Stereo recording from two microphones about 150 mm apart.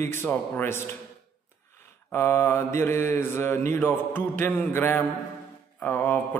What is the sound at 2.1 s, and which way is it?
Mantra, 15° left (ahead or behind).